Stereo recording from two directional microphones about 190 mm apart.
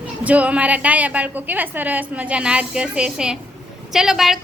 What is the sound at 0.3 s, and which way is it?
A woman's voice, 5° right (ahead or behind).